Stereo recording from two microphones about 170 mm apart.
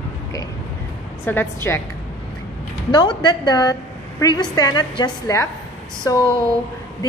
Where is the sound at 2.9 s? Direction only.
25° left (ahead or behind).